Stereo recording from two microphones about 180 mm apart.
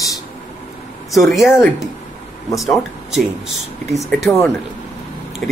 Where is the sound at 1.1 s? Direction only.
Centre (ahead or behind).